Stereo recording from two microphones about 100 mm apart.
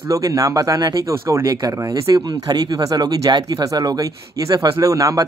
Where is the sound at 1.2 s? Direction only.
30° right (ahead or behind).